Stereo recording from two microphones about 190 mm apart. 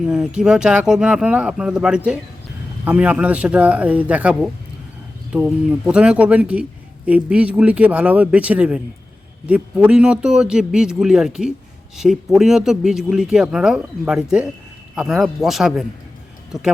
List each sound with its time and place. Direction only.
0.1 s speech: 5° right (ahead or behind)